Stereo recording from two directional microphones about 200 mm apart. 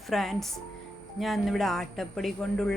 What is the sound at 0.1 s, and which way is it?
A man's voice, centre (ahead or behind).